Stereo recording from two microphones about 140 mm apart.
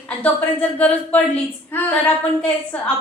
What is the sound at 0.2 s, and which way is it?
A woman's voice, 10° left (ahead or behind).